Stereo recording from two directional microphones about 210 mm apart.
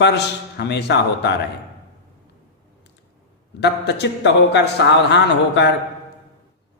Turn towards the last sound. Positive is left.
turn(degrees=55)  # may be behind; listen again after turning